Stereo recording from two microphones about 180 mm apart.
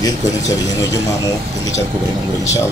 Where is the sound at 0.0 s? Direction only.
20° left (ahead or behind).